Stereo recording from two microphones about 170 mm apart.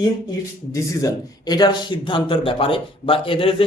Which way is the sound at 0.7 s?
20° left (ahead or behind).